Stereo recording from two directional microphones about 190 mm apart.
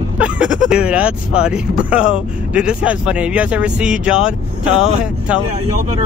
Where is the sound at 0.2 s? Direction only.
5° right (ahead or behind).